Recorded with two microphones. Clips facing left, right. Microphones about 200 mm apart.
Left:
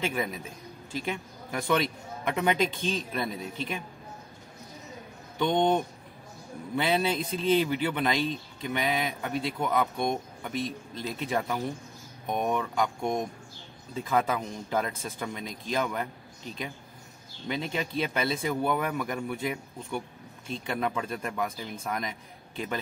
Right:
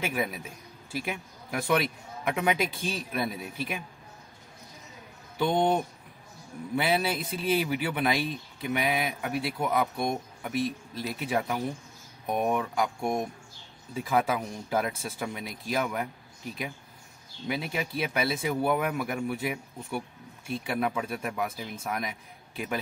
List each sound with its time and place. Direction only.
0.0 s speech: 10° right (ahead or behind)
5.4 s speech: 10° right (ahead or behind)